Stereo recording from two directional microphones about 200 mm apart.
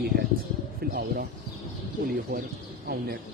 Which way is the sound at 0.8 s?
50° right (ahead or behind).